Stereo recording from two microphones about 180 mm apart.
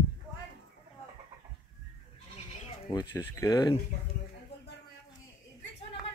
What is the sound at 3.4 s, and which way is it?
Speech, 25° left (ahead or behind).